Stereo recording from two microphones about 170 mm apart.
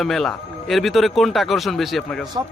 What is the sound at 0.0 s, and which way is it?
A man's voice, centre (ahead or behind).